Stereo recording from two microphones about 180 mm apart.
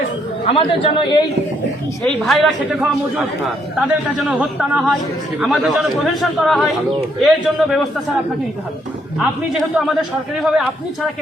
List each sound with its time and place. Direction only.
0.4 s a man's voice: 30° left (ahead or behind)
2.0 s a man's voice: centre (ahead or behind)
3.8 s a man's voice: 5° right (ahead or behind)
9.1 s a man's voice: centre (ahead or behind)